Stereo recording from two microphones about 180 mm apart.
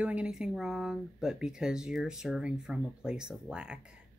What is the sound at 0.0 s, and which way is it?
Speech, 5° right (ahead or behind).